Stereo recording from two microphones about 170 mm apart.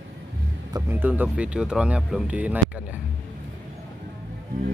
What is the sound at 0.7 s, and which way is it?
Speech, 10° right (ahead or behind).